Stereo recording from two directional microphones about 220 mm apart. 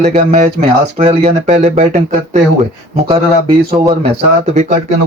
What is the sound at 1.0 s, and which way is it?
Speech, 30° right (ahead or behind).